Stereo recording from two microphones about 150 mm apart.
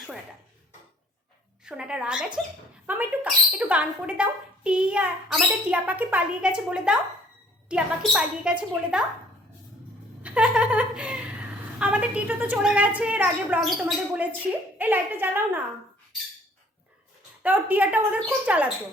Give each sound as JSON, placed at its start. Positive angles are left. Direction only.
{"t": 1.6, "sound": "a child's voice", "side_deg": -5}
{"t": 10.2, "sound": "a child's voice", "side_deg": -5}
{"t": 17.4, "sound": "a child's voice", "side_deg": -10}